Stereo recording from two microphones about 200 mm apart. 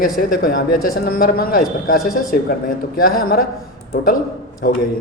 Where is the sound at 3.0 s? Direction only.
45° left (ahead or behind).